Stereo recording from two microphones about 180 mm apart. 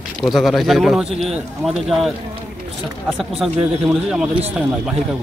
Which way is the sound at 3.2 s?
Centre (ahead or behind).